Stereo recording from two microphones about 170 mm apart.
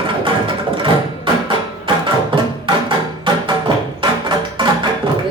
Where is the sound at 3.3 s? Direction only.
30° right (ahead or behind).